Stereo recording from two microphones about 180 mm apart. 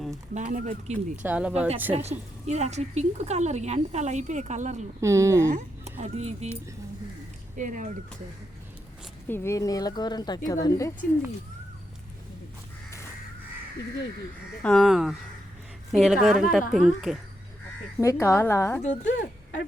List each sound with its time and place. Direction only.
0.3 s speech: 45° right (ahead or behind)
1.2 s speech: 10° right (ahead or behind)
1.9 s speech: 35° right (ahead or behind)
4.9 s speech: 15° right (ahead or behind)
5.5 s speech: 40° right (ahead or behind)
7.5 s speech: 45° right (ahead or behind)
9.2 s speech: 15° left (ahead or behind)
14.6 s a woman's voice: centre (ahead or behind)
18.0 s a woman's voice: 15° left (ahead or behind)
19.0 s speech: 90° left